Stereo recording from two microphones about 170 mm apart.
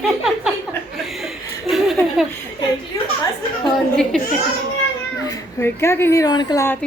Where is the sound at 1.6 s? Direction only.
Centre (ahead or behind).